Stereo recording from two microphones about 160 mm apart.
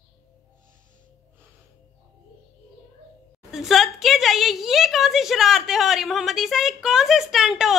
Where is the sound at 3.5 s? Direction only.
Centre (ahead or behind).